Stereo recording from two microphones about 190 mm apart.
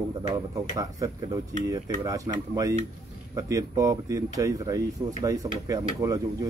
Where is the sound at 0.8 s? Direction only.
20° right (ahead or behind).